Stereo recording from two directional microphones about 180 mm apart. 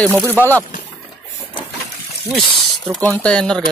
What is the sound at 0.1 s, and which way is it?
Speech, 10° right (ahead or behind).